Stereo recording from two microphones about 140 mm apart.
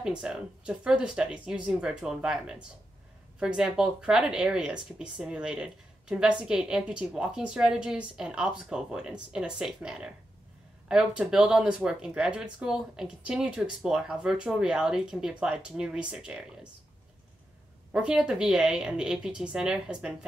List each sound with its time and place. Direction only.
0.0 s speech: 5° right (ahead or behind)
17.9 s speech: 5° right (ahead or behind)